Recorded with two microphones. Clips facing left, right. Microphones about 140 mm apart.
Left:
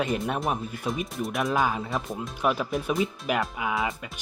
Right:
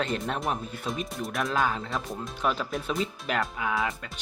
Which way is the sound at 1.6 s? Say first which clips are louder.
Left 2 dB; 10° left (ahead or behind).